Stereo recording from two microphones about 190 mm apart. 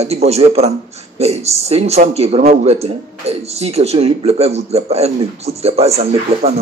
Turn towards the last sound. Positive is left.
turn(degrees=-35)  # may be behind; listen again after turning